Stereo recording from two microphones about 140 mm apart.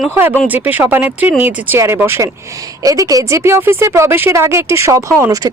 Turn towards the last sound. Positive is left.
turn(degrees=-25)  # may be behind; listen again after turning